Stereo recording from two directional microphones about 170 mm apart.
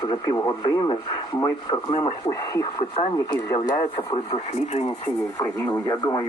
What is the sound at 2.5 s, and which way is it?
Speech, 25° left (ahead or behind).